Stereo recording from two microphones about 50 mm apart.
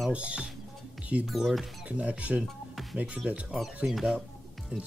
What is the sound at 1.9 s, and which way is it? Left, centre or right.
Speech, right.